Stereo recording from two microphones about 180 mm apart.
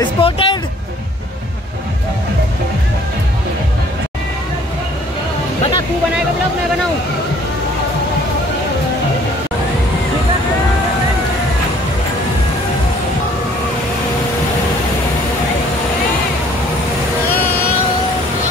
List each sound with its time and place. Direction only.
0.2 s music: 30° left (ahead or behind)